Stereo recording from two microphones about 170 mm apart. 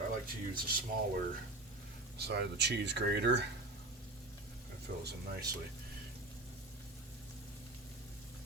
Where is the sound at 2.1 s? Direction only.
80° right.